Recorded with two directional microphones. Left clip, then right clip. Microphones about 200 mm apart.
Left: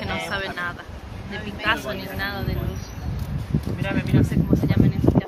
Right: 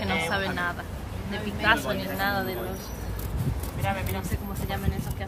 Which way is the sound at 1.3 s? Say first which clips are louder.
Even; 30° right (ahead or behind).